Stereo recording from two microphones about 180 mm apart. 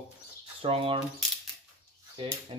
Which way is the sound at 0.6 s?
30° right (ahead or behind).